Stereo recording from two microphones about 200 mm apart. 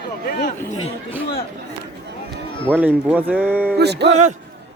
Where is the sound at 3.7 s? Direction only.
55° right (ahead or behind).